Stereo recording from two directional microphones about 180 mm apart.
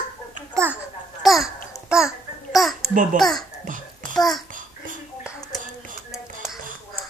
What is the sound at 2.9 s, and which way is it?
Speech, 45° right (ahead or behind).